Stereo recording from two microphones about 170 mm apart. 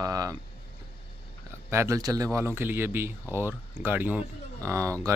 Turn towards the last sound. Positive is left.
turn(degrees=-20)  # may be behind; listen again after turning